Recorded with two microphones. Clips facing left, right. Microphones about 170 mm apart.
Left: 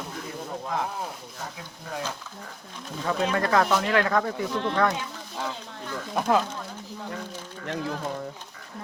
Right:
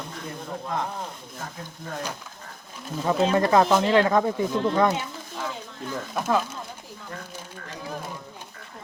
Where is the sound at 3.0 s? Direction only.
25° right (ahead or behind).